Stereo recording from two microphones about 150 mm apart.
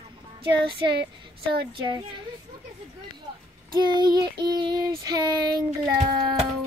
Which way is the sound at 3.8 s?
30° right (ahead or behind).